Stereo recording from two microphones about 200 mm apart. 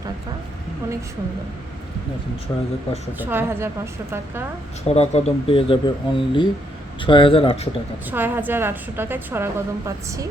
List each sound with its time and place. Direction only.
3.2 s a woman's voice: 10° right (ahead or behind)
4.9 s speech: 30° left (ahead or behind)
8.1 s a woman's voice: 10° right (ahead or behind)